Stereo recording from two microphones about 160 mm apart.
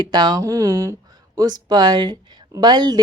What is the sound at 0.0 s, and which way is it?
A woman's voice, 25° right (ahead or behind).